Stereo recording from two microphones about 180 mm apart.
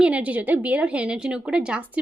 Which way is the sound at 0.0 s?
5° right (ahead or behind).